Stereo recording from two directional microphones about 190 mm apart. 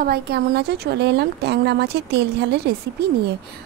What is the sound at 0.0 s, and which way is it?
Speech, 60° right (ahead or behind).